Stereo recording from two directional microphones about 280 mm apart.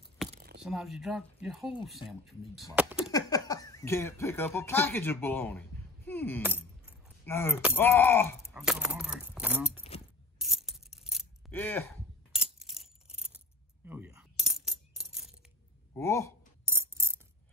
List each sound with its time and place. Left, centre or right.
0.3 s a sound: right
0.6 s speech: centre
2.7 s a sound: centre
3.1 s speech: centre
7.7 s groan: centre
10.4 s coin: centre
15.9 s speech: centre
16.6 s mechanisms: centre